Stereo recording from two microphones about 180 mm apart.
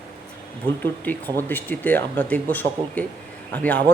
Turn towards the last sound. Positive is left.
turn(degrees=10)  # may be behind; listen again after turning